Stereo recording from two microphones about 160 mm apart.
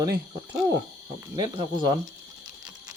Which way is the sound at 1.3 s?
30° right (ahead or behind).